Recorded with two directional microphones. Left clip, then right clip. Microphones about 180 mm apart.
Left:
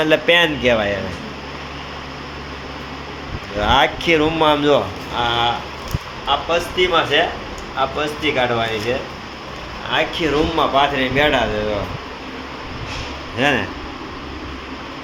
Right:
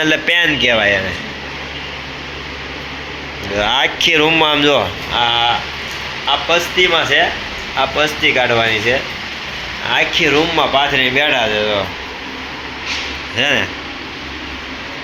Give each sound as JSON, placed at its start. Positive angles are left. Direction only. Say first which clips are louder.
{"t": 0.0, "sound": "speech", "louder": "right 1 dB", "side_deg": 5}
{"t": 3.6, "sound": "speech", "louder": "right 2 dB", "side_deg": 0}
{"t": 6.2, "sound": "speech", "louder": "right 4 dB", "side_deg": -20}
{"t": 13.3, "sound": "speech", "louder": "right 3 dB", "side_deg": 5}